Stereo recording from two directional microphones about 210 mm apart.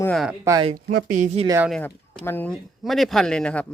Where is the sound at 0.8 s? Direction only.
45° right (ahead or behind).